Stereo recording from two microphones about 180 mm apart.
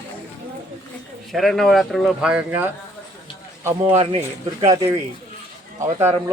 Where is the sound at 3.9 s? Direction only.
30° right (ahead or behind).